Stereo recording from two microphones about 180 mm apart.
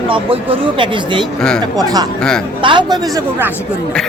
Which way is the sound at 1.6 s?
20° right (ahead or behind).